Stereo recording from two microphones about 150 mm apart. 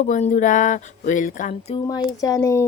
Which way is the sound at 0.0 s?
50° left (ahead or behind).